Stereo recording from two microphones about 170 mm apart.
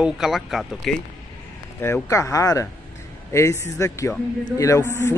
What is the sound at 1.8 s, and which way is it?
Speech, 15° left (ahead or behind).